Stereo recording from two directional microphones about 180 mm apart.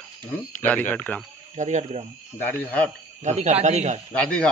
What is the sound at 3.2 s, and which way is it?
Speech, 40° right (ahead or behind).